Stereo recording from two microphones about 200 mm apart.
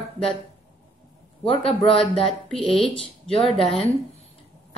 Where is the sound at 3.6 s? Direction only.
30° left (ahead or behind).